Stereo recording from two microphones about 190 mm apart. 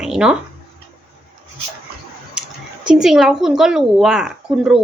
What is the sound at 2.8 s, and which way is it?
A woman's voice, 5° right (ahead or behind).